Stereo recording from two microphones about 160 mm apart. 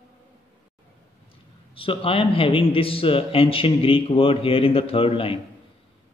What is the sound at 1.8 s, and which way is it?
A man's voice, 35° left (ahead or behind).